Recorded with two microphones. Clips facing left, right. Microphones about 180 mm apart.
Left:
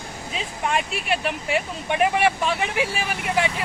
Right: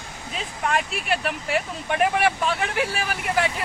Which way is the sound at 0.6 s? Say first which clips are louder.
Even; centre (ahead or behind).